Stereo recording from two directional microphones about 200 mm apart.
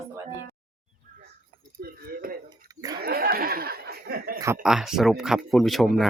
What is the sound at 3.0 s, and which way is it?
Speech, 50° right (ahead or behind).